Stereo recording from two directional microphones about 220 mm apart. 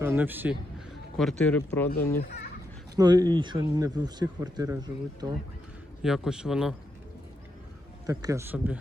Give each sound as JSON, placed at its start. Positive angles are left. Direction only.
{"t": 0.0, "sound": "a man's voice", "side_deg": -10}
{"t": 1.2, "sound": "speech", "side_deg": 5}
{"t": 2.9, "sound": "speech", "side_deg": -20}
{"t": 6.0, "sound": "a man's voice", "side_deg": 0}
{"t": 8.0, "sound": "speech", "side_deg": -15}